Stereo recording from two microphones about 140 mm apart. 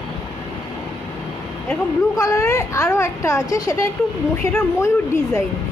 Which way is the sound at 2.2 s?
20° left (ahead or behind).